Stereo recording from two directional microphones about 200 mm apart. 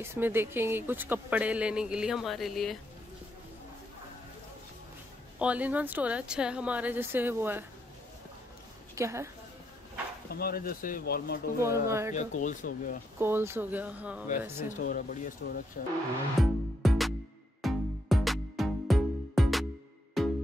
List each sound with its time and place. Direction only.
0.0 s speech: 10° right (ahead or behind)
5.4 s speech: 5° right (ahead or behind)
8.9 s a woman's voice: 15° right (ahead or behind)
10.3 s speech: 50° left (ahead or behind)
11.6 s speech: 15° right (ahead or behind)
12.1 s speech: 40° left (ahead or behind)
13.2 s speech: 10° right (ahead or behind)
14.7 s speech: 45° left (ahead or behind)
16.3 s music: centre (ahead or behind)